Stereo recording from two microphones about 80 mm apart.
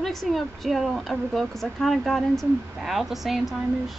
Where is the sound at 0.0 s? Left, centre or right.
Centre.